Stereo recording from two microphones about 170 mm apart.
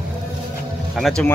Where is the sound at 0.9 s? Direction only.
5° left (ahead or behind).